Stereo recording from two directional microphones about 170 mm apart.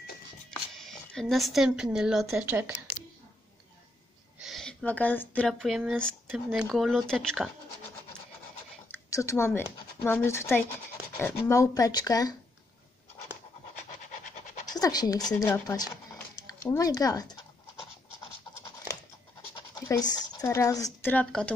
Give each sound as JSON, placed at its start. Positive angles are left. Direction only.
{"t": 0.5, "sound": "speech", "side_deg": 5}
{"t": 4.4, "sound": "speech", "side_deg": 0}
{"t": 8.9, "sound": "speech", "side_deg": 15}
{"t": 14.1, "sound": "scratch", "side_deg": 45}
{"t": 14.8, "sound": "speech", "side_deg": 20}
{"t": 19.5, "sound": "speech", "side_deg": 20}